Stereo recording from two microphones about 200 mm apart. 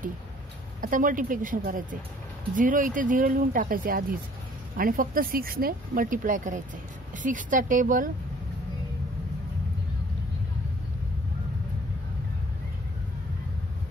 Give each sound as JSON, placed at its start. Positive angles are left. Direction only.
{"t": 0.7, "sound": "speech", "side_deg": -40}